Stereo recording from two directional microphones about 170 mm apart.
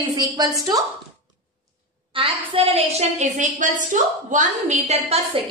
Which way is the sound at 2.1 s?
35° right (ahead or behind).